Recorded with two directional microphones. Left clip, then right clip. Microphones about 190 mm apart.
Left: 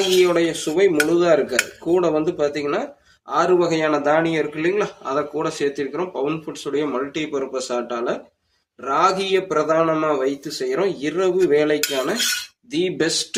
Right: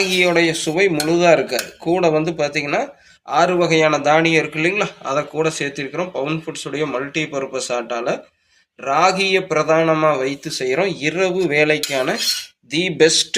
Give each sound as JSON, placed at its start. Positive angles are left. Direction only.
{"t": 0.2, "sound": "speech", "side_deg": -10}